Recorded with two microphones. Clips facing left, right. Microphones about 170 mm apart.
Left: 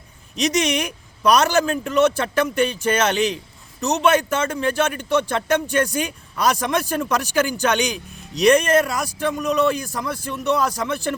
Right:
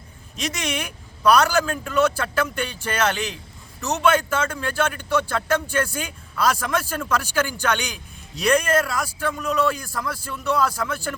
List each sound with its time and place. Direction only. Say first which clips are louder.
0.3 s a man's voice: left 7 dB; 20° left (ahead or behind)